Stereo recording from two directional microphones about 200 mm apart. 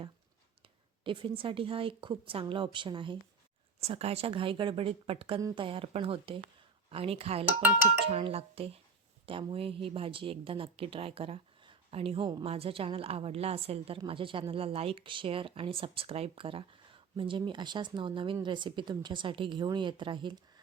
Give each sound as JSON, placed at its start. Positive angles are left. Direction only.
{"t": 1.0, "sound": "speech", "side_deg": -25}